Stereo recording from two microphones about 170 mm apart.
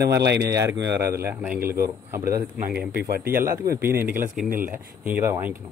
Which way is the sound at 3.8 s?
15° right (ahead or behind).